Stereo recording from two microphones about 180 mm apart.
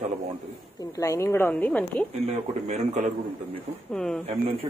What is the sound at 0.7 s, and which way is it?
Speech, 20° left (ahead or behind).